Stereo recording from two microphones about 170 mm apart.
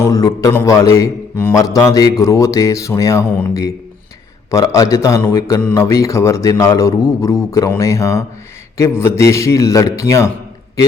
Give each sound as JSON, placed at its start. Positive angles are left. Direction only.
{"t": 0.0, "sound": "a man's voice", "side_deg": 20}